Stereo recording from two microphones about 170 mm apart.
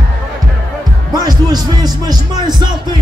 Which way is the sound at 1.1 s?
25° right (ahead or behind).